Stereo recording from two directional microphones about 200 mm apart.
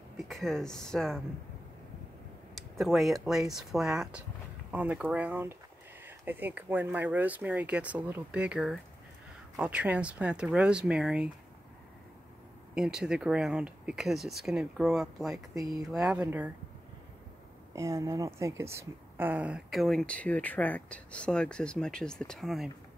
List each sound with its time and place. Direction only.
0.3 s speech: centre (ahead or behind)
2.5 s speech: centre (ahead or behind)
12.7 s speech: 5° right (ahead or behind)
15.5 s speech: 20° right (ahead or behind)
15.9 s speech: 5° right (ahead or behind)
17.7 s speech: 15° right (ahead or behind)